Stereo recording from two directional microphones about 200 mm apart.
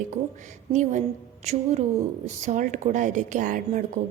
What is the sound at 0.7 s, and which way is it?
Speech, 35° right (ahead or behind).